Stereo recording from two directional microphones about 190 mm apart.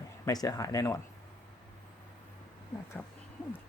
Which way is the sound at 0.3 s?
20° left (ahead or behind).